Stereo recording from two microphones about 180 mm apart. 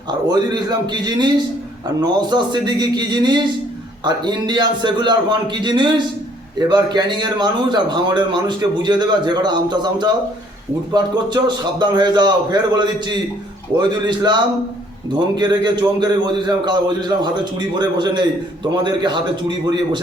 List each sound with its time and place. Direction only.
0.1 s a man's voice: 25° right (ahead or behind)